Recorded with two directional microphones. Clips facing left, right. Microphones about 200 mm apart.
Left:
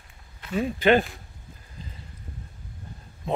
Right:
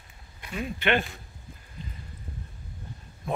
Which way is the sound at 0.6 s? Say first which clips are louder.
Left 7 dB; 35° left (ahead or behind).